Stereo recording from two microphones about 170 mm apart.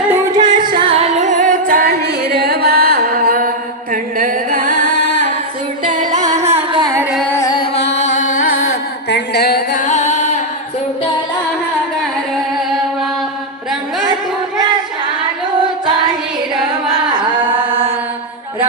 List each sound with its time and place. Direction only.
0.1 s music: 20° right (ahead or behind); by 3.5 s 60° right (ahead or behind)
3.9 s chant: 55° right (ahead or behind)
6.1 s music: 25° right (ahead or behind)
6.3 s carnatic music: 40° right (ahead or behind)
6.8 s carnatic music: 15° right (ahead or behind)
7.3 s carnatic music: 15° left (ahead or behind)
7.8 s carnatic music: 90° left
9.0 s music: 75° left (ahead or behind)
9.7 s music: 45° left (ahead or behind)
16.9 s carnatic music: 25° right (ahead or behind)